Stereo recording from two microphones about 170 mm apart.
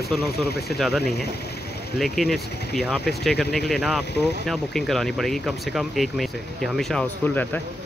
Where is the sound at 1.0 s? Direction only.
70° left (ahead or behind).